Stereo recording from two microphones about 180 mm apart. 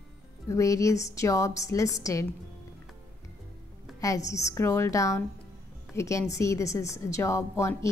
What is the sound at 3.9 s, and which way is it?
A woman's voice, 20° left (ahead or behind).